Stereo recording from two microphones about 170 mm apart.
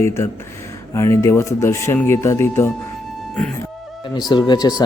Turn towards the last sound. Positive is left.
turn(degrees=25)  # may be behind; listen again after turning